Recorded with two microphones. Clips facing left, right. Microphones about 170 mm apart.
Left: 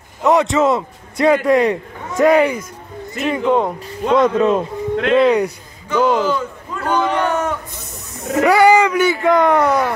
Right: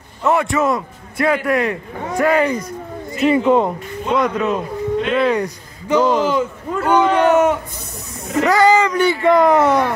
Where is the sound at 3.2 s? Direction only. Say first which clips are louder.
Right 3 dB; 5° right (ahead or behind).